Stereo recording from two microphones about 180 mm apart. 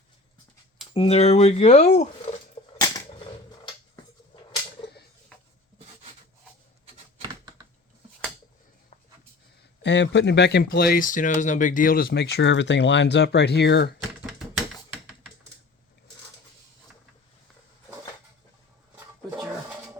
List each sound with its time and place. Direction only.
0.9 s speech: 35° left (ahead or behind)
2.6 s typewriter: 30° left (ahead or behind)
7.2 s computer keyboard: 20° right (ahead or behind)
9.8 s speech: 75° left (ahead or behind)
14.3 s typewriter: 5° right (ahead or behind)
18.9 s a sound: 10° right (ahead or behind)